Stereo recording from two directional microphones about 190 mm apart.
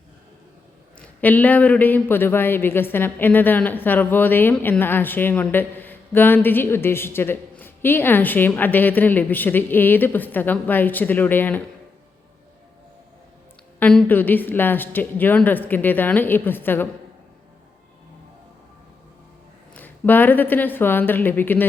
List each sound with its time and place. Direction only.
0.9 s a man's voice: 10° left (ahead or behind)
13.7 s a man's voice: 5° left (ahead or behind)
19.7 s a man's voice: 10° left (ahead or behind)